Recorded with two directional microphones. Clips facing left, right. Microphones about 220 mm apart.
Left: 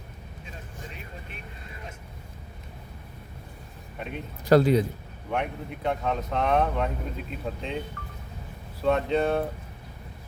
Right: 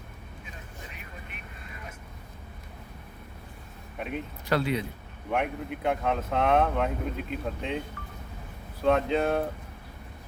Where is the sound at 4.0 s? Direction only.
Centre (ahead or behind).